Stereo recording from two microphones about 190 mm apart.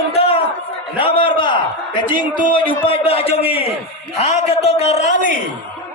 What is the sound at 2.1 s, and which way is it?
A man's voice, 25° left (ahead or behind).